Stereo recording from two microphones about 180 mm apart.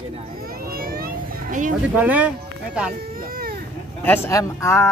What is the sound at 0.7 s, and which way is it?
Cat, 55° right (ahead or behind).